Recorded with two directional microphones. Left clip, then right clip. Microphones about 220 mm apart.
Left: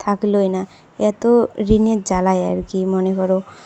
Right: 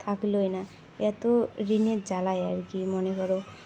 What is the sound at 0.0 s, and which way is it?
Speech, 35° left (ahead or behind).